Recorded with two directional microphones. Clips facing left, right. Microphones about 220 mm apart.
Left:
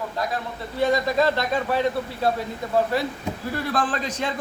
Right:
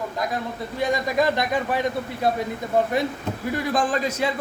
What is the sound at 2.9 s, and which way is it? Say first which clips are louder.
A man's voice: right 1 dB; 20° right (ahead or behind).